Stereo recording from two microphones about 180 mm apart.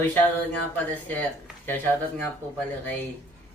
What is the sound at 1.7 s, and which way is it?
Speech, 10° left (ahead or behind).